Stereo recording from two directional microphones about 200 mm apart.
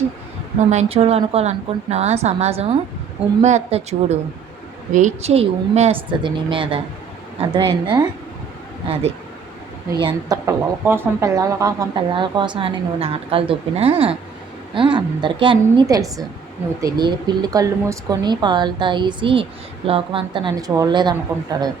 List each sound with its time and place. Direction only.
0.7 s a woman's voice: 35° right (ahead or behind)
10.0 s speech: 20° right (ahead or behind)